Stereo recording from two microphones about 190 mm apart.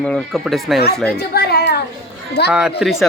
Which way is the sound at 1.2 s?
55° left (ahead or behind).